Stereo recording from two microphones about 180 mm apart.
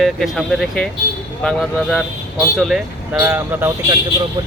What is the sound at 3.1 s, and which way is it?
Speech, 10° right (ahead or behind).